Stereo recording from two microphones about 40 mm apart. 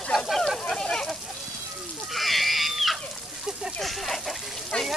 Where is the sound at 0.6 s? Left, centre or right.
Centre.